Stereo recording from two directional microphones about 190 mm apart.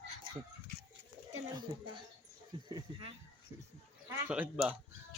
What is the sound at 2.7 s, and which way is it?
Speech, 30° right (ahead or behind).